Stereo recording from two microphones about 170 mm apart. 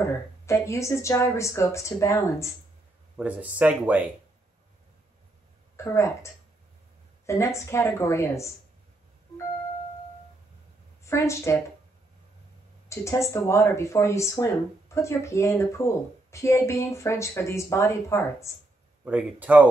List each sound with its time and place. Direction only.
0.5 s speech: 15° left (ahead or behind)
3.2 s speech: 10° right (ahead or behind)
5.8 s speech: 15° left (ahead or behind)
11.1 s speech: 15° left (ahead or behind)
12.8 s speech: 15° left (ahead or behind)
19.0 s speech: 10° right (ahead or behind)